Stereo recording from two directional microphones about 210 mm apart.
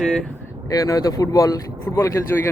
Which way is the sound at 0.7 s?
15° left (ahead or behind).